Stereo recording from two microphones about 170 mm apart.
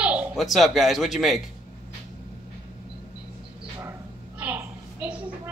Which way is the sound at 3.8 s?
10° right (ahead or behind).